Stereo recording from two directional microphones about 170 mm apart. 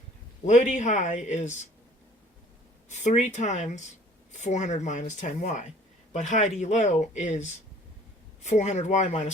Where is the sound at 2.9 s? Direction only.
45° left (ahead or behind).